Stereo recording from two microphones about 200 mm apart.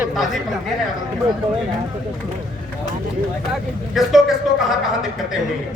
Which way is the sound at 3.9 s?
Centre (ahead or behind).